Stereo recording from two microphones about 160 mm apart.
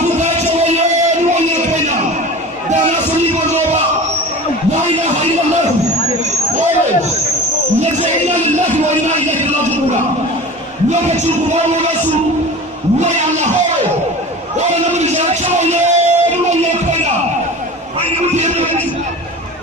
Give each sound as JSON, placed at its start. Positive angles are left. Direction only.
{"t": 0.2, "sound": "music", "side_deg": -45}
{"t": 1.3, "sound": "a sound", "side_deg": -50}
{"t": 10.9, "sound": "speech", "side_deg": -45}
{"t": 13.0, "sound": "speech", "side_deg": -45}
{"t": 15.0, "sound": "music", "side_deg": -45}